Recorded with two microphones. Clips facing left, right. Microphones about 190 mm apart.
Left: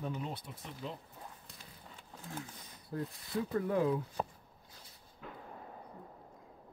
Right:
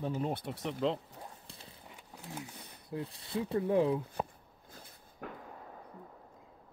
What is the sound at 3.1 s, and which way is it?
Speech, 25° right (ahead or behind).